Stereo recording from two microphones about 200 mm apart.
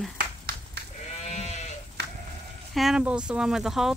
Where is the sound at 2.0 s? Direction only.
55° right (ahead or behind).